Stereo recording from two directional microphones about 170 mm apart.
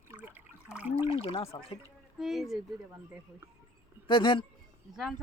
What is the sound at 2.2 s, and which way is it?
Speech, centre (ahead or behind).